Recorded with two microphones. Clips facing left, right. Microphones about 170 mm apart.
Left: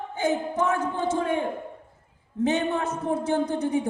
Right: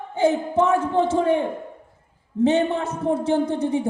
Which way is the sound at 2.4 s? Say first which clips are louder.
Right 5 dB; 30° right (ahead or behind).